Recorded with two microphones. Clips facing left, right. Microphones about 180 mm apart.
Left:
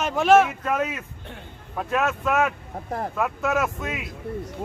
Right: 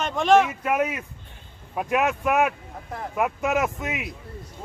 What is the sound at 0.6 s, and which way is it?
Speech, 10° right (ahead or behind).